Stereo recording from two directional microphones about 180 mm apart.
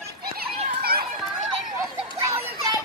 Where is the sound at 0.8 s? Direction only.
60° right (ahead or behind).